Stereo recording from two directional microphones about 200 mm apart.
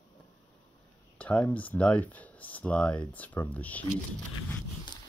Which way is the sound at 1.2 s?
5° left (ahead or behind).